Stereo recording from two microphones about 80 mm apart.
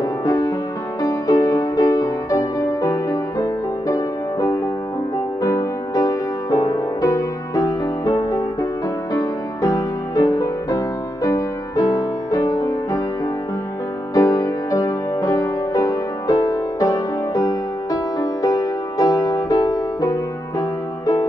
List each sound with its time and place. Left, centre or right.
0.2 s music: left
14.1 s music: left